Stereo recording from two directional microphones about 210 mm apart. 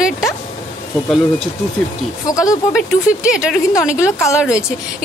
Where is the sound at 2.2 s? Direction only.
15° left (ahead or behind).